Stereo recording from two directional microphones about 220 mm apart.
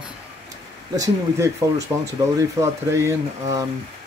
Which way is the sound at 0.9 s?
15° right (ahead or behind).